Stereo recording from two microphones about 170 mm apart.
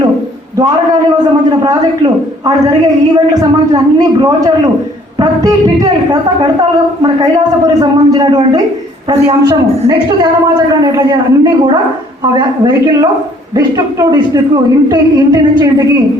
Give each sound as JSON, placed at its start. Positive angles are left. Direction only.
{"t": 1.5, "sound": "a woman's voice", "side_deg": -20}
{"t": 3.3, "sound": "a woman's voice", "side_deg": -20}